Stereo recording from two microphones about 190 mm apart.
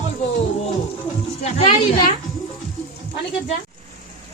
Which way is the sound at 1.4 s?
35° left (ahead or behind).